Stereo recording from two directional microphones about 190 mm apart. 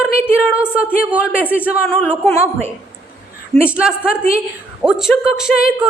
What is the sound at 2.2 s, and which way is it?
Speech, 15° left (ahead or behind).